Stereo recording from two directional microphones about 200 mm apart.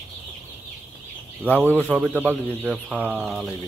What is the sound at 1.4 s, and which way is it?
Speech, 10° left (ahead or behind).